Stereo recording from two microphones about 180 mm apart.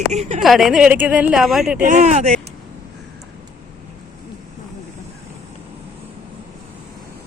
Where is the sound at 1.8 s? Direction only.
40° right (ahead or behind).